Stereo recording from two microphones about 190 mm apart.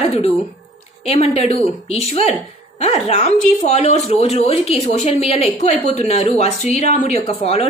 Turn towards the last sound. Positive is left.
turn(degrees=30)  # may be behind; listen again after turning